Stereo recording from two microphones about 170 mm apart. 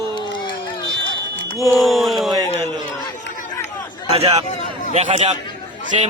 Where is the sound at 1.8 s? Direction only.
Centre (ahead or behind).